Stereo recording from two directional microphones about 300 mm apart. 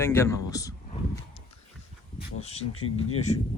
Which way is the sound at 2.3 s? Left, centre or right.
Centre.